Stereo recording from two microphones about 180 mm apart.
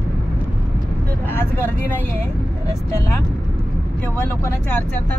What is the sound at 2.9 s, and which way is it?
Speech, 15° left (ahead or behind).